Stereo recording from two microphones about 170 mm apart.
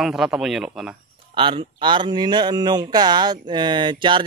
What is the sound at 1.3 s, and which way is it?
Speech, 30° right (ahead or behind).